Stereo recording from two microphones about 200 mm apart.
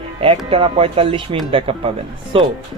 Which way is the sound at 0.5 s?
30° right (ahead or behind).